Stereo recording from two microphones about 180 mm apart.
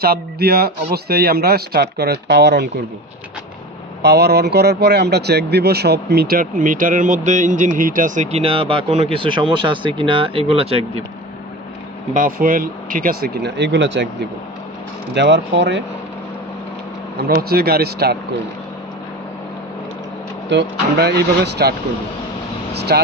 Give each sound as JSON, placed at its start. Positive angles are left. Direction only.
{"t": 0.0, "sound": "speech", "side_deg": -60}
{"t": 4.0, "sound": "speech", "side_deg": -65}
{"t": 12.1, "sound": "speech", "side_deg": -50}
{"t": 17.2, "sound": "speech", "side_deg": -60}
{"t": 20.5, "sound": "speech", "side_deg": -70}